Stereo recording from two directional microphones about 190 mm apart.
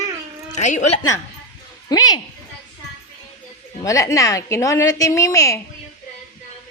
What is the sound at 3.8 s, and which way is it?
A woman's voice, 15° left (ahead or behind).